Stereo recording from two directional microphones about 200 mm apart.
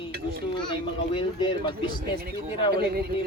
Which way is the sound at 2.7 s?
50° right (ahead or behind).